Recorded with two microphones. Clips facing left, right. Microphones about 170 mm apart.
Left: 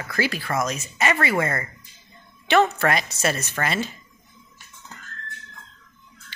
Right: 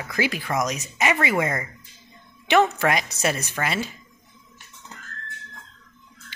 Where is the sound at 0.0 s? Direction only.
15° right (ahead or behind).